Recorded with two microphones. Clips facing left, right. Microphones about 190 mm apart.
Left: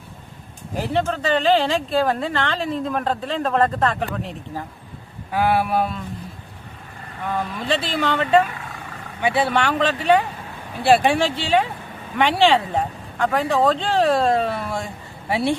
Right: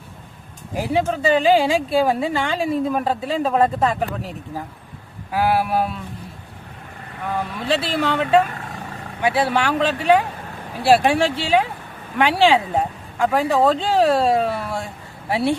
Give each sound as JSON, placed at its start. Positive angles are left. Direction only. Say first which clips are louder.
{"t": 0.8, "sound": "speech", "louder": "right 2 dB", "side_deg": -10}
{"t": 7.7, "sound": "speech", "louder": "right 2 dB", "side_deg": -10}
{"t": 8.4, "sound": "vehicle", "louder": "right 2 dB", "side_deg": -45}
{"t": 9.2, "sound": "speech", "louder": "right 1 dB", "side_deg": -5}